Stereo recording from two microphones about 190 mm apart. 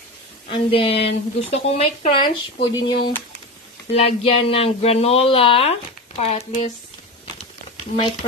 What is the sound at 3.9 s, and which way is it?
Speech, 30° left (ahead or behind).